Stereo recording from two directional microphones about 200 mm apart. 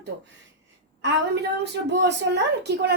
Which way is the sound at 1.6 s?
60° right (ahead or behind).